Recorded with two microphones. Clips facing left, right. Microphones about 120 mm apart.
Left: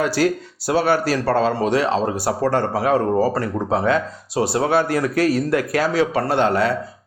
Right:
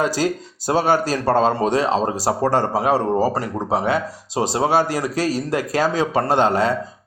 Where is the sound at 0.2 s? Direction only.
25° right (ahead or behind).